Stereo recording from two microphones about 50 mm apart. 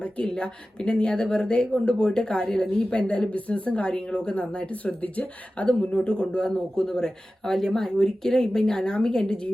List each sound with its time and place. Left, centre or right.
0.0 s a woman's voice: left